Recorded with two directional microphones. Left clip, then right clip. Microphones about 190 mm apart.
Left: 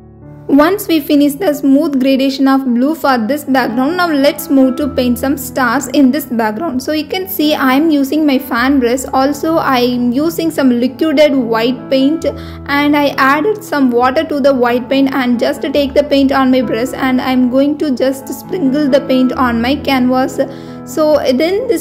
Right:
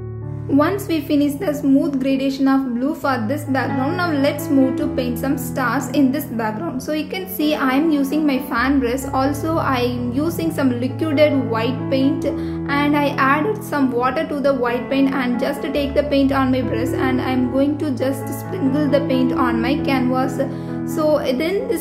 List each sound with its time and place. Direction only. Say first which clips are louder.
0.5 s a woman's voice: left 8 dB; 45° left (ahead or behind)